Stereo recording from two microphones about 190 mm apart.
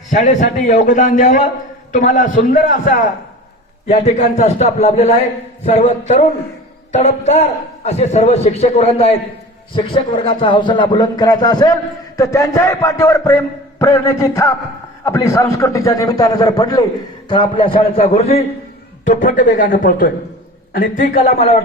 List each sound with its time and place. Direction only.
0.1 s a man's voice: 40° left (ahead or behind)
20.7 s a man's voice: 45° left (ahead or behind)